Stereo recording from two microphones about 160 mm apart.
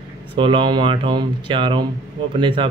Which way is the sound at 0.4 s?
30° right (ahead or behind).